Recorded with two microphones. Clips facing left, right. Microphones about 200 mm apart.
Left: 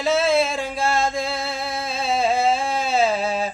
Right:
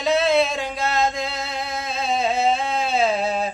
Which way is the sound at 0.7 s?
30° left (ahead or behind).